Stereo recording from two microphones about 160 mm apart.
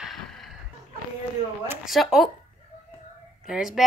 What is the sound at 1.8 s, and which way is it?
Speech, centre (ahead or behind).